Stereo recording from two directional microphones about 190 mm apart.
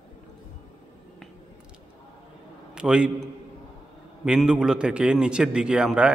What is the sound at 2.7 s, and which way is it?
Speech, 5° right (ahead or behind).